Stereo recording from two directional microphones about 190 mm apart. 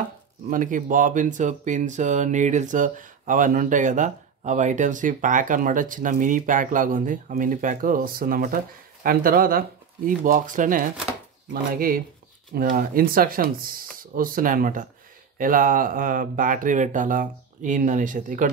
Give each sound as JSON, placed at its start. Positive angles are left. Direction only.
{"t": 0.5, "sound": "speech", "side_deg": -45}